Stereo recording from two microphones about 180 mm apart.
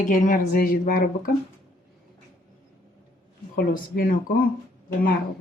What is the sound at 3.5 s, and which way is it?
Speech, 55° left (ahead or behind).